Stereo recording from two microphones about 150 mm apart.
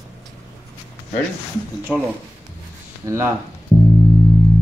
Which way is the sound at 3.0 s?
20° right (ahead or behind).